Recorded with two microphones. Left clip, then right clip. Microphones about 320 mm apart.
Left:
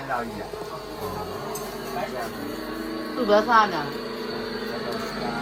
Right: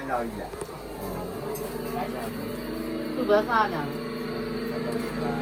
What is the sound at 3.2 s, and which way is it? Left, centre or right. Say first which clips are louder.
Speech: left 4 dB; left.